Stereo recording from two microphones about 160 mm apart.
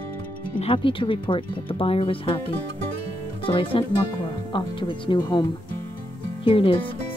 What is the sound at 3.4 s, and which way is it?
Speech, 35° left (ahead or behind).